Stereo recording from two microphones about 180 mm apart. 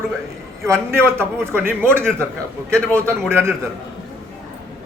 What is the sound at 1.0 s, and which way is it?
A man's voice, 15° right (ahead or behind).